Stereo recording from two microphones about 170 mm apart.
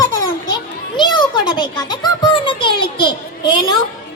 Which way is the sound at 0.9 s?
25° left (ahead or behind).